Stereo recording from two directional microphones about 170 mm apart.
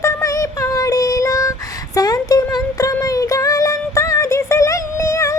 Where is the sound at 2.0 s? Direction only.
20° left (ahead or behind).